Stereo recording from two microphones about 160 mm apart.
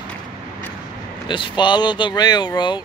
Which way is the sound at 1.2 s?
30° left (ahead or behind).